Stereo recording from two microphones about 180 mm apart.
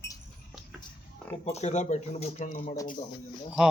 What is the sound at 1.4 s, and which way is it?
Speech, 35° left (ahead or behind).